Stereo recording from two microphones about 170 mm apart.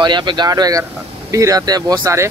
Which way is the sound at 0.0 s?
25° right (ahead or behind).